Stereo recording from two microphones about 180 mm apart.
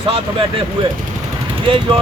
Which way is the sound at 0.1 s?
30° right (ahead or behind).